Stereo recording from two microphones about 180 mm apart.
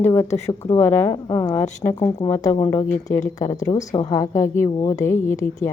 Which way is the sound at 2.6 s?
15° left (ahead or behind).